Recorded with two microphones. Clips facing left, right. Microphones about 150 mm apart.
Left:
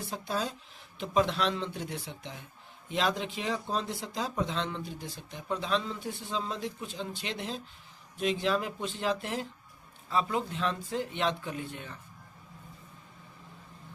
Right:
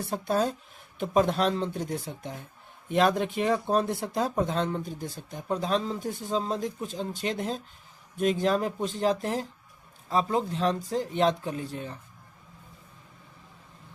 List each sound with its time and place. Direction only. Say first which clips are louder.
0.0 s a man's voice: right 7 dB; 55° right (ahead or behind); by 11.9 s 35° right (ahead or behind)